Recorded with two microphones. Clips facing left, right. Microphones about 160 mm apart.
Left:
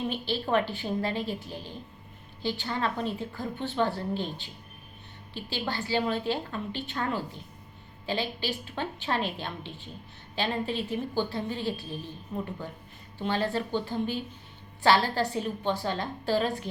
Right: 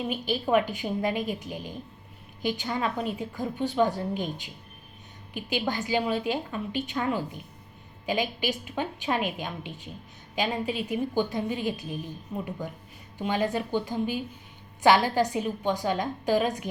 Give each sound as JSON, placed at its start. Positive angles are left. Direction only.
{"t": 0.1, "sound": "a woman's voice", "side_deg": -10}
{"t": 5.3, "sound": "a woman's voice", "side_deg": -15}
{"t": 13.1, "sound": "a woman's voice", "side_deg": -15}